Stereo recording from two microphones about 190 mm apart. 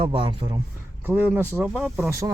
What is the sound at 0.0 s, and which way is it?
Speech, 25° right (ahead or behind).